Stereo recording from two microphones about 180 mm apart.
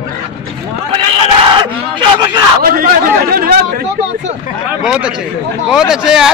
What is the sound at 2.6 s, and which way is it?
Speech, 55° right (ahead or behind).